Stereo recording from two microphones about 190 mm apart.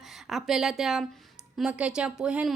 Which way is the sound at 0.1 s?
Centre (ahead or behind).